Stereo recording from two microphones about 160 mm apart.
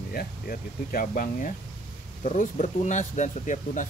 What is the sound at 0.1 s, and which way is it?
Speech, 65° left (ahead or behind).